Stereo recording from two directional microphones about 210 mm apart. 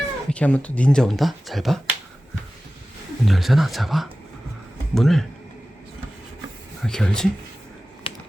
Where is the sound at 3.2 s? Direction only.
Centre (ahead or behind).